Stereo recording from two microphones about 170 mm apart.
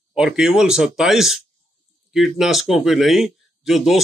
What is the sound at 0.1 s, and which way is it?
A man's voice, 5° right (ahead or behind).